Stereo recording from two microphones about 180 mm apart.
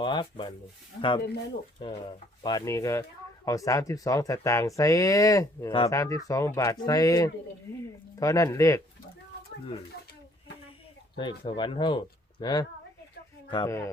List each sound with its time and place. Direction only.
0.0 s speech: 25° left (ahead or behind)
1.8 s speech: 30° left (ahead or behind)
11.2 s speech: 25° left (ahead or behind)